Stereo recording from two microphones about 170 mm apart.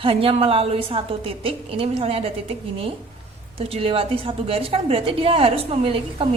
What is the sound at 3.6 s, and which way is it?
A woman's voice, 35° right (ahead or behind).